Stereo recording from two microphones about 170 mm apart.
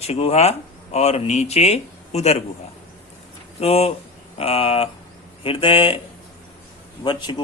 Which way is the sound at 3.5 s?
40° left (ahead or behind).